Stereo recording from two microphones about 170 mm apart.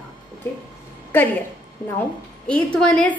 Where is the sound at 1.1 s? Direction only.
10° left (ahead or behind).